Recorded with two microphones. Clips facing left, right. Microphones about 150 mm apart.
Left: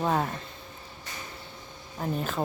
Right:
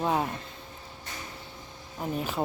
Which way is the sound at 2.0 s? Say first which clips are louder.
Left 1 dB; 10° right (ahead or behind).